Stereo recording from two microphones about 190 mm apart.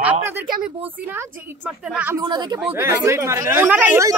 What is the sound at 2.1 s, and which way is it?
Speech, 20° right (ahead or behind).